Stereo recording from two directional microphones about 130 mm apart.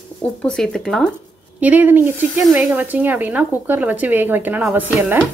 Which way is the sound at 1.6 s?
15° right (ahead or behind).